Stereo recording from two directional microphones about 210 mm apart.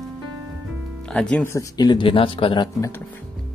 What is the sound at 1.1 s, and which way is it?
Speech, 5° left (ahead or behind).